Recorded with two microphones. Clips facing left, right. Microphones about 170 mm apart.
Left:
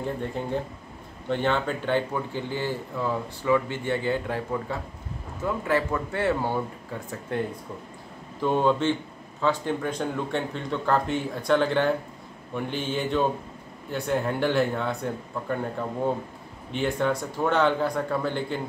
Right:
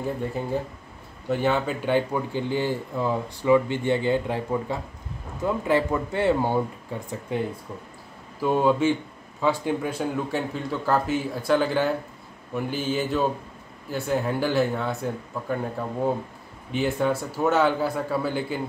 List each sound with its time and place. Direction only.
0.0 s speech: 5° right (ahead or behind)